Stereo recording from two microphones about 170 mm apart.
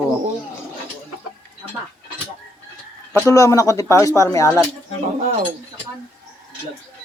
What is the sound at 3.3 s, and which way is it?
Speech, 20° left (ahead or behind).